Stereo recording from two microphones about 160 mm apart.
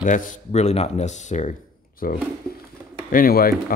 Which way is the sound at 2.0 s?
60° left (ahead or behind).